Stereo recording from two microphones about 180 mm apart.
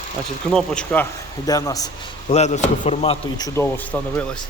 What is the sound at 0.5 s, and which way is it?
Speech, 5° left (ahead or behind).